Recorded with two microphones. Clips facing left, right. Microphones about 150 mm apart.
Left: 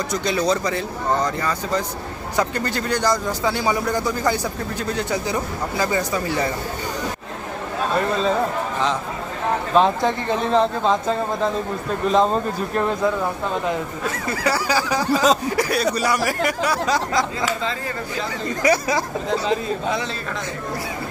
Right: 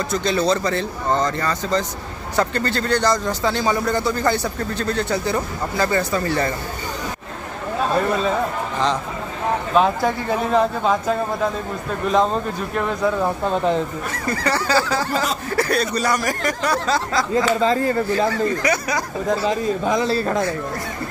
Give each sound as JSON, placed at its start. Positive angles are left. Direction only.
{"t": 0.1, "sound": "speech", "side_deg": 15}
{"t": 9.8, "sound": "speech", "side_deg": -5}
{"t": 14.1, "sound": "speech", "side_deg": 5}
{"t": 17.6, "sound": "speech", "side_deg": -40}
{"t": 18.3, "sound": "speech", "side_deg": 25}
{"t": 19.9, "sound": "speech", "side_deg": -35}